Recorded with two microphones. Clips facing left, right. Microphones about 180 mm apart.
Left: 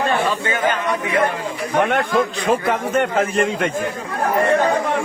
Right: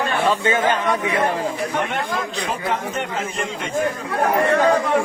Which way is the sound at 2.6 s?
55° left (ahead or behind).